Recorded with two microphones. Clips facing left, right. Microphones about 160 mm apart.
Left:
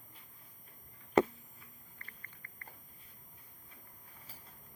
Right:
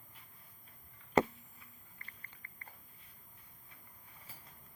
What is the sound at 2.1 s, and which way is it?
Chewing, 20° right (ahead or behind).